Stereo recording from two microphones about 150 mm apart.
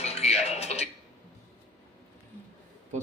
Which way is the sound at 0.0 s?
45° left (ahead or behind).